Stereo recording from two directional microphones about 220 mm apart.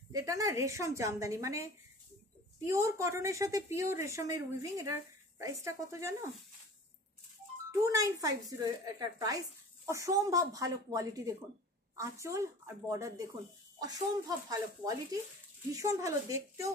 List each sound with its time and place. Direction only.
0.1 s speech: 15° right (ahead or behind)
7.7 s a child's voice: 15° right (ahead or behind)